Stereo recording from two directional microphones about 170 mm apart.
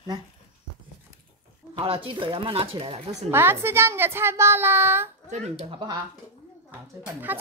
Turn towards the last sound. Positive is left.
turn(degrees=-10)  # may be behind; listen again after turning